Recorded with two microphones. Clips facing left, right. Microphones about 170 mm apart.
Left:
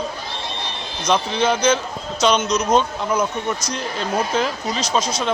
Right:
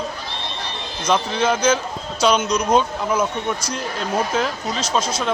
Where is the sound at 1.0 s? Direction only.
5° right (ahead or behind).